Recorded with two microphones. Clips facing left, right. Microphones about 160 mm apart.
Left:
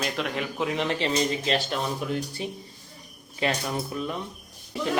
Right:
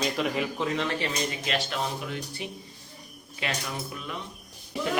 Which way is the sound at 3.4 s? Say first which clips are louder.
Left 6 dB; 35° left (ahead or behind).